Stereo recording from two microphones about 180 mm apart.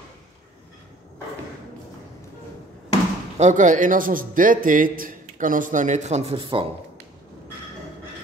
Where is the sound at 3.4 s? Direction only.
40° right (ahead or behind).